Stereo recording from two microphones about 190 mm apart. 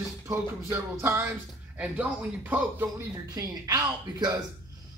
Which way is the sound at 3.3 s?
20° right (ahead or behind).